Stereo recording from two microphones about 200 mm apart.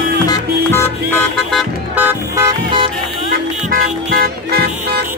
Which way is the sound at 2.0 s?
10° right (ahead or behind).